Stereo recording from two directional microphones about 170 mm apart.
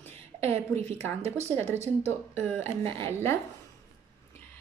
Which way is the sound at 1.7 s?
40° right (ahead or behind).